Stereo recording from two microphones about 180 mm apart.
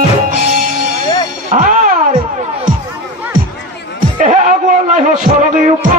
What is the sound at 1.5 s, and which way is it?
Music, 50° right (ahead or behind).